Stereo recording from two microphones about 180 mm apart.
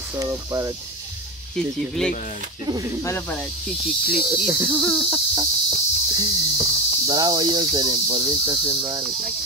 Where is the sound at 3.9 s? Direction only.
Centre (ahead or behind).